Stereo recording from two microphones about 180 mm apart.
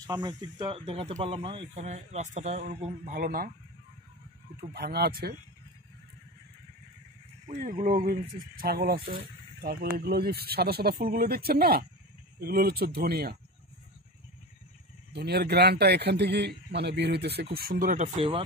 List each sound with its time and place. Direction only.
0.0 s a man's voice: 25° right (ahead or behind); by 3.5 s 50° right (ahead or behind)
4.6 s a man's voice: 60° right (ahead or behind)
7.4 s a man's voice: 45° right (ahead or behind)
15.1 s a man's voice: 65° right (ahead or behind); by 18.4 s 30° right (ahead or behind)